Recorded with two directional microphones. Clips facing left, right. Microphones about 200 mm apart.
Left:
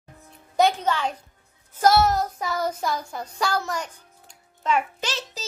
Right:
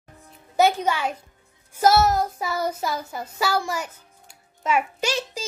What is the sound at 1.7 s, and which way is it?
Child singing, 5° right (ahead or behind).